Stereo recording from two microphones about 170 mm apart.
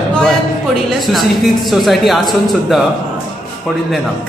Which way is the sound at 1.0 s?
Centre (ahead or behind).